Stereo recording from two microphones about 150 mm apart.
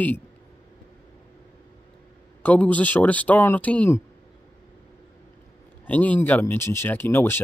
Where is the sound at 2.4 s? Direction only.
10° left (ahead or behind).